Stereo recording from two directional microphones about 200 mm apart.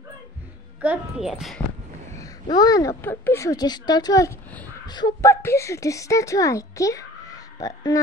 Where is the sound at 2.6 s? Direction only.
20° left (ahead or behind).